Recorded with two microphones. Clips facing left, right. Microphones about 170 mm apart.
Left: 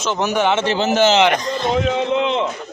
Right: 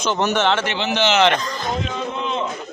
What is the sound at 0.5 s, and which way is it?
Speech, 25° left (ahead or behind).